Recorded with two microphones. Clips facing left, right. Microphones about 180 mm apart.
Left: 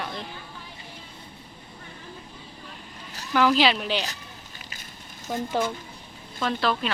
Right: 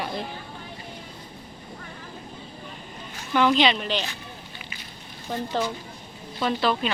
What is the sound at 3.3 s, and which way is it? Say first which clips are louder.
Speech: even; 5° left (ahead or behind).